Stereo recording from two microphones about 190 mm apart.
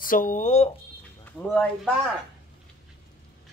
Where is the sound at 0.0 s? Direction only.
45° left (ahead or behind).